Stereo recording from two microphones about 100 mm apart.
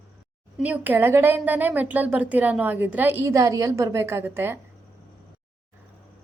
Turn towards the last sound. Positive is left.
turn(degrees=-25)  # may be behind; listen again after turning